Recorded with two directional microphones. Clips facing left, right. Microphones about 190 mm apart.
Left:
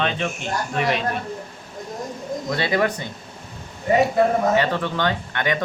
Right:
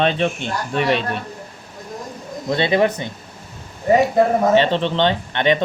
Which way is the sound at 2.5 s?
25° right (ahead or behind).